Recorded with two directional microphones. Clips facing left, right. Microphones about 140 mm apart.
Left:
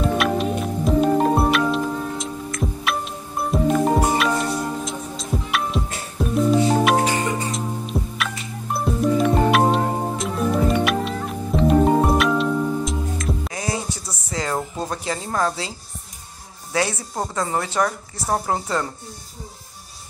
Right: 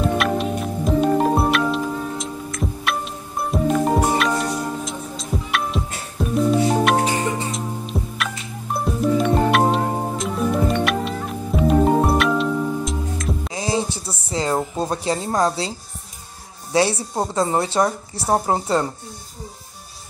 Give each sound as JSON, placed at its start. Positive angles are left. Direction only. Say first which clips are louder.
{"t": 0.0, "sound": "music", "louder": "even", "side_deg": 0}
{"t": 13.6, "sound": "a sound", "louder": "right 4 dB", "side_deg": -30}
{"t": 16.7, "sound": "speech", "louder": "right 4 dB", "side_deg": -30}